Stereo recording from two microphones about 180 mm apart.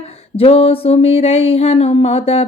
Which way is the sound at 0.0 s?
35° left (ahead or behind).